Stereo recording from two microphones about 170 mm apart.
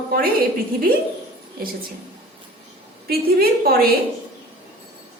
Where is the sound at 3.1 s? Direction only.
65° right (ahead or behind).